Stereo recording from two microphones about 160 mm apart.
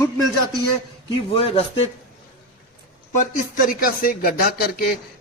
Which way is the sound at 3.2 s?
60° left (ahead or behind).